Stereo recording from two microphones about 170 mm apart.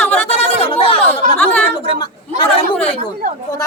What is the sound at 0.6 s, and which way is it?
Speech, 35° left (ahead or behind).